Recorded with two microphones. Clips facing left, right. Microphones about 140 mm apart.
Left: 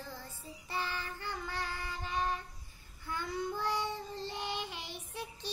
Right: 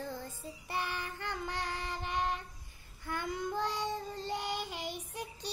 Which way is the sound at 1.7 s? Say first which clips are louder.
Right 2 dB; 70° right (ahead or behind).